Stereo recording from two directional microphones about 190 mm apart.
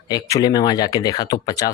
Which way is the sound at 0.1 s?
20° left (ahead or behind).